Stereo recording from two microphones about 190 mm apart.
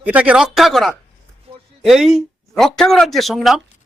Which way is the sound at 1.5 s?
30° right (ahead or behind).